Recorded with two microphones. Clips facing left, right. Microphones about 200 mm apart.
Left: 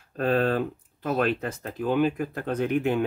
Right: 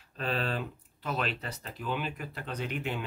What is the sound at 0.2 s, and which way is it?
Speech, 50° left (ahead or behind).